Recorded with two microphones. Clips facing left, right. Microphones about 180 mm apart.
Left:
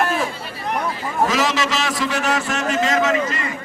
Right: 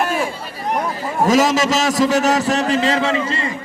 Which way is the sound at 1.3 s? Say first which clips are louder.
Right 6 dB; 45° right (ahead or behind).